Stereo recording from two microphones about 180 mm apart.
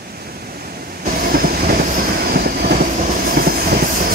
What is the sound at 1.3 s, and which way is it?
Train, 55° right (ahead or behind).